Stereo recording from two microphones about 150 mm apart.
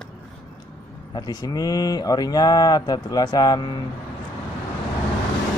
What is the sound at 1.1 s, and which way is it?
Speech, 25° left (ahead or behind).